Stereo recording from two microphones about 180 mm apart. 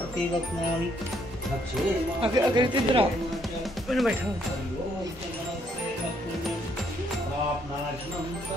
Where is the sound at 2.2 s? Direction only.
25° right (ahead or behind).